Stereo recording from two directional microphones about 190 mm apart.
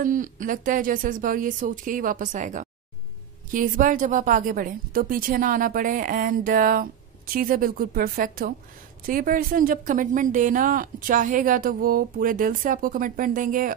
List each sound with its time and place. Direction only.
0.0 s a woman's voice: 45° right (ahead or behind)